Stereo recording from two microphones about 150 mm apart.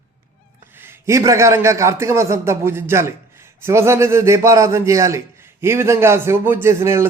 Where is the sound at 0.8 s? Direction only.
15° right (ahead or behind).